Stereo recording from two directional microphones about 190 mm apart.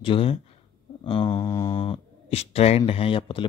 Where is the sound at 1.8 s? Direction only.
30° left (ahead or behind).